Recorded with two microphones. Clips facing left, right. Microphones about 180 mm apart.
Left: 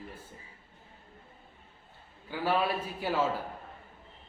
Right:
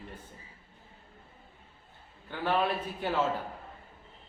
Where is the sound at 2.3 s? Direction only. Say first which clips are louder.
Even; 5° left (ahead or behind).